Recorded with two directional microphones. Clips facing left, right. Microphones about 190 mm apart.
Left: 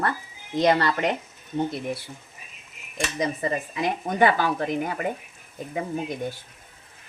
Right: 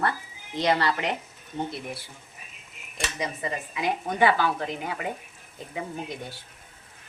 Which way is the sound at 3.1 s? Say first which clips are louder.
Left 6 dB; 40° left (ahead or behind).